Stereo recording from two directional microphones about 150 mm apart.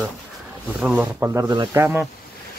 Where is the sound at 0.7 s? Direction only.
10° right (ahead or behind); by 1.8 s 25° right (ahead or behind).